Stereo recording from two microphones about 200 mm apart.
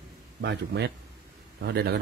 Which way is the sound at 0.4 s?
55° right (ahead or behind).